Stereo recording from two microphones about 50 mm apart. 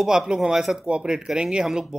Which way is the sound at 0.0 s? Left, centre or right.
Centre.